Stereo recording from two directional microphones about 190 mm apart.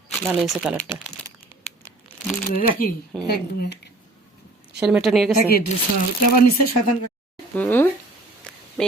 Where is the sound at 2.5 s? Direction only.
45° left (ahead or behind).